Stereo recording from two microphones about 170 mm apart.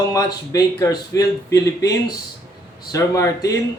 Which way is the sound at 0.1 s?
20° left (ahead or behind).